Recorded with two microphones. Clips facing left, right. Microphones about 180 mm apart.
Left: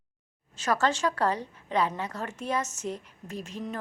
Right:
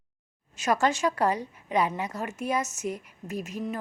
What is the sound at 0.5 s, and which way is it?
Speech, 10° right (ahead or behind).